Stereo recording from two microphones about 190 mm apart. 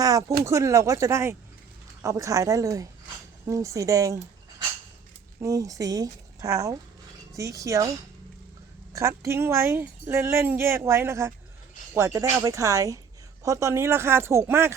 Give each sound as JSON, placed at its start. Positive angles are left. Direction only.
{"t": 0.0, "sound": "a sound", "side_deg": -20}
{"t": 0.4, "sound": "speech", "side_deg": -15}
{"t": 5.4, "sound": "speech", "side_deg": -15}
{"t": 8.9, "sound": "speech", "side_deg": -15}